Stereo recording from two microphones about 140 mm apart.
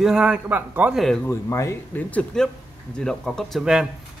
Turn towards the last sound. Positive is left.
turn(degrees=0)  # may be behind; listen again after turning